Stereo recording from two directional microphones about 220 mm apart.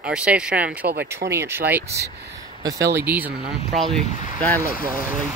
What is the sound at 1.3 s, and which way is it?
Speech, 10° right (ahead or behind).